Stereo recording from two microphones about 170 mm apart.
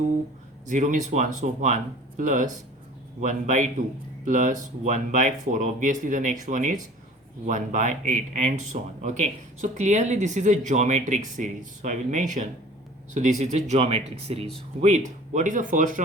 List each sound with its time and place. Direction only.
0.7 s speech: 45° right (ahead or behind)